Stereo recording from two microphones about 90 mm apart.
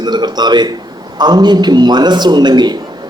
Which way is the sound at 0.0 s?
50° right (ahead or behind).